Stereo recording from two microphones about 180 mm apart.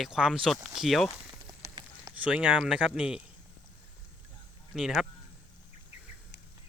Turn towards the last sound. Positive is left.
turn(degrees=0)  # may be behind; listen again after turning